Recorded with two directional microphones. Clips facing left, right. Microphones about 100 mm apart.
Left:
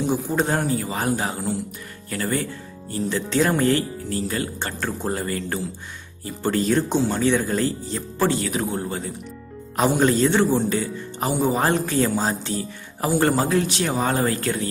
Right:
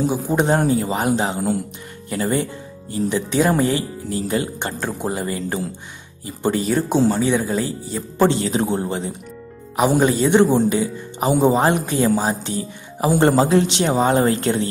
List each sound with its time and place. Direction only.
0.1 s a man's voice: 15° right (ahead or behind)
6.6 s a man's voice: 5° right (ahead or behind)
8.2 s a man's voice: 25° right (ahead or behind)
9.8 s a man's voice: 15° right (ahead or behind)